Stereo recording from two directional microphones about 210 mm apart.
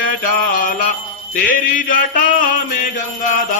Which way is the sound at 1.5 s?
40° left (ahead or behind).